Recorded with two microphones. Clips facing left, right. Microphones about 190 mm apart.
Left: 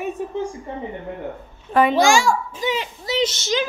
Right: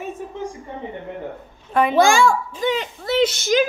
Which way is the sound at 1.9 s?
55° right (ahead or behind).